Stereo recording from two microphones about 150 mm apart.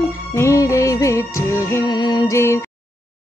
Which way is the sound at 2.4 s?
20° left (ahead or behind).